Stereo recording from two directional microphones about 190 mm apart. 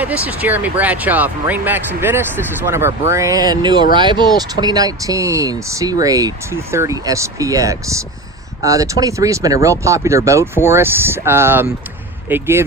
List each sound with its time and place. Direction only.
0.0 s speech: 10° right (ahead or behind)